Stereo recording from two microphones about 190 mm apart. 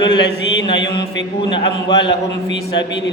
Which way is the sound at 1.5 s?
25° left (ahead or behind).